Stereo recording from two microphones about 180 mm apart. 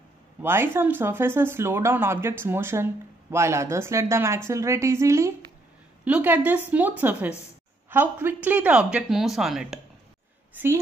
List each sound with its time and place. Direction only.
0.4 s a woman's voice: 10° right (ahead or behind)